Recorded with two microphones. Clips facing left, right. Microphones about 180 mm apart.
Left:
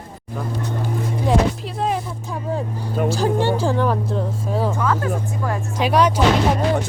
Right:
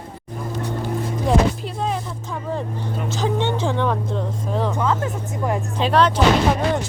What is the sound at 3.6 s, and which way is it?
Speech, 5° left (ahead or behind).